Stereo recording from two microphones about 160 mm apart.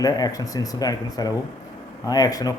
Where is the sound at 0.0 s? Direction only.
25° left (ahead or behind).